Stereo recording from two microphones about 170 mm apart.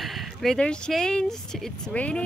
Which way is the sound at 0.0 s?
Centre (ahead or behind).